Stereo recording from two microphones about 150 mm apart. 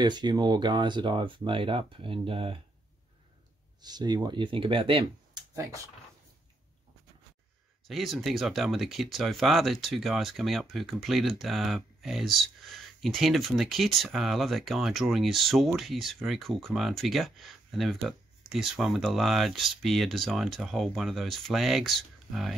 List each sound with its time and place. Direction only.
0.0 s speech: 30° right (ahead or behind)
3.8 s speech: 25° right (ahead or behind)
7.9 s speech: centre (ahead or behind)